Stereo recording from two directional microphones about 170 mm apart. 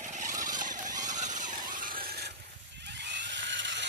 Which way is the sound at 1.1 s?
45° right (ahead or behind).